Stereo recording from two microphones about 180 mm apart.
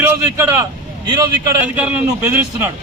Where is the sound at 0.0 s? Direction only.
15° right (ahead or behind).